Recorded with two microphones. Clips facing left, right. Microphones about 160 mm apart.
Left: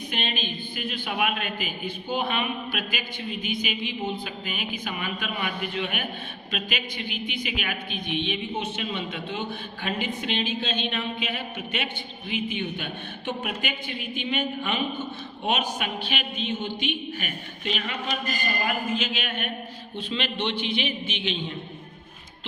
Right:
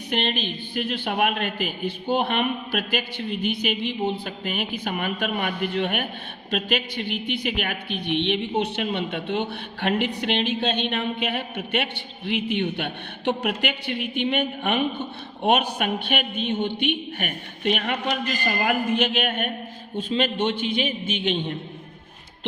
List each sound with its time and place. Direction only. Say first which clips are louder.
0.1 s a woman's voice: right 7 dB; 60° right (ahead or behind)